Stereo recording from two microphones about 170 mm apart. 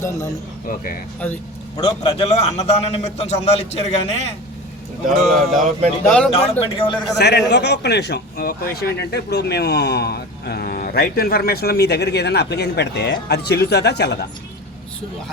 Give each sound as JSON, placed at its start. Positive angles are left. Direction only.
{"t": 0.7, "sound": "speech", "side_deg": 60}
{"t": 1.7, "sound": "a man's voice", "side_deg": 25}
{"t": 2.1, "sound": "a man's voice", "side_deg": 40}
{"t": 5.0, "sound": "speech", "side_deg": 0}
{"t": 6.3, "sound": "a man's voice", "side_deg": 35}
{"t": 7.2, "sound": "speech", "side_deg": 80}